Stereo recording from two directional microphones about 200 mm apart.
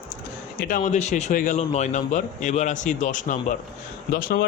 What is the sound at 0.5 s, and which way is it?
Speech, 45° left (ahead or behind).